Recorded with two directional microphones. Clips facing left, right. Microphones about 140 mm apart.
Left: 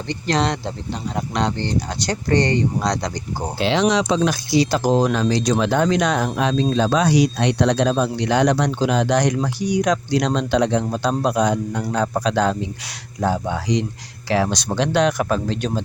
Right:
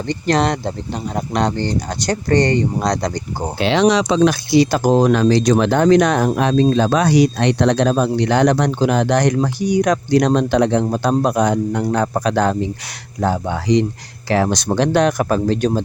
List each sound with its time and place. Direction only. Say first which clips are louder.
0.1 s speech: right 4 dB; 50° right (ahead or behind)
3.6 s speech: right 4 dB; 65° right (ahead or behind); by 15.8 s 45° right (ahead or behind)